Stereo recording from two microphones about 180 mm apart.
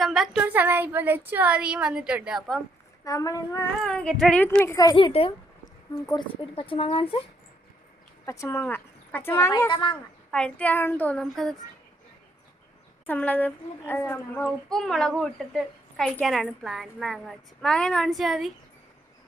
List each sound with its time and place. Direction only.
0.0 s speech: centre (ahead or behind)
3.0 s speech: 20° left (ahead or behind)
3.8 s speech: 5° left (ahead or behind); by 7.2 s 30° left (ahead or behind)
8.2 s speech: 15° left (ahead or behind)
10.3 s speech: 5° left (ahead or behind)
13.1 s a child's voice: 10° left (ahead or behind)